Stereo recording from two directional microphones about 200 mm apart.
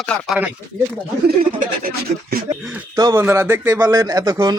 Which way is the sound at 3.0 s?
20° right (ahead or behind).